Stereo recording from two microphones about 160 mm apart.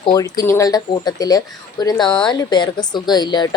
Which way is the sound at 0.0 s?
25° left (ahead or behind).